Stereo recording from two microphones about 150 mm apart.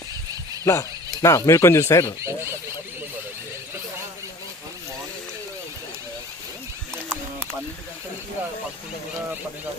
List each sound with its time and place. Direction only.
0.6 s speech: 20° left (ahead or behind)
2.2 s speech: 15° right (ahead or behind)
6.9 s a sound: 5° left (ahead or behind)